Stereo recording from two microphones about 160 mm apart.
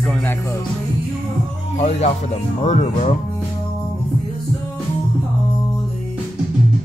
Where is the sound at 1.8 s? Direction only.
40° left (ahead or behind).